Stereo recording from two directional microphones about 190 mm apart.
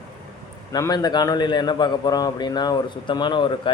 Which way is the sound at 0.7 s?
20° left (ahead or behind).